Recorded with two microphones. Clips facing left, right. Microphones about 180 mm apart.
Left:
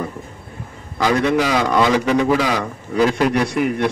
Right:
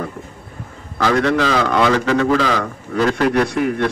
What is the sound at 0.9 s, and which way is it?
A man's voice, 15° left (ahead or behind).